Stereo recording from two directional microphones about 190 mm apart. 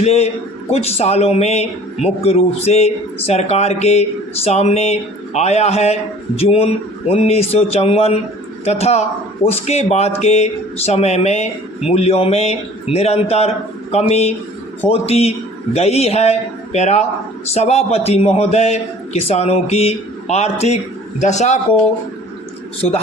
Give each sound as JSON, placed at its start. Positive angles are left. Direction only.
{"t": 0.0, "sound": "a man's voice", "side_deg": 35}